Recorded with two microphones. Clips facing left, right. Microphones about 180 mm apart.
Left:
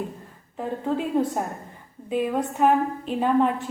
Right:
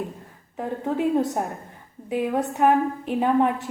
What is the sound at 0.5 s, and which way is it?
A woman's voice, 15° right (ahead or behind).